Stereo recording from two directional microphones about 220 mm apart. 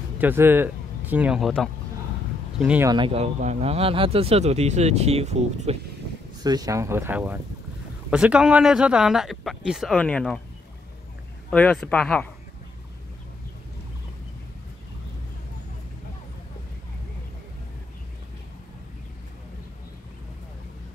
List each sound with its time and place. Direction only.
0.2 s speech: 10° right (ahead or behind)
2.9 s speech: 25° right (ahead or behind)
6.4 s speech: 15° right (ahead or behind); by 10.4 s 5° left (ahead or behind)
11.5 s speech: 5° left (ahead or behind)